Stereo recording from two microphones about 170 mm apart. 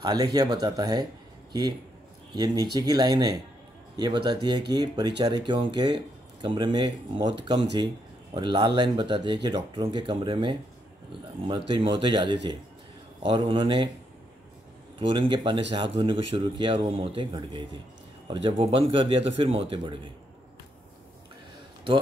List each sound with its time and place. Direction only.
0.0 s speech: 20° right (ahead or behind)
2.3 s speech: 25° right (ahead or behind)
15.0 s speech: 25° right (ahead or behind)